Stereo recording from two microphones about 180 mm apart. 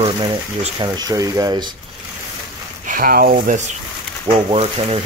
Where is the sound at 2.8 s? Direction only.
50° right (ahead or behind).